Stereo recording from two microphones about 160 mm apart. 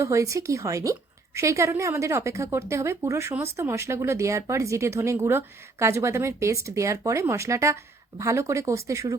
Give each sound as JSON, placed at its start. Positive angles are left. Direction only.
{"t": 0.0, "sound": "a woman's voice", "side_deg": -20}